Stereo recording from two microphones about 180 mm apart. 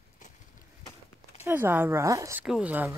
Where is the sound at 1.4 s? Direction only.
10° right (ahead or behind).